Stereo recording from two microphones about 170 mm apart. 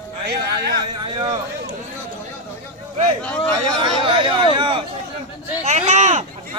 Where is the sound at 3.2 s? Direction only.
10° left (ahead or behind).